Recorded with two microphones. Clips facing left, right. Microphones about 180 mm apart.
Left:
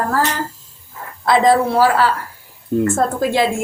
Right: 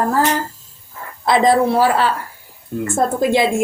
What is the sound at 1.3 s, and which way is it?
Speech, 20° right (ahead or behind).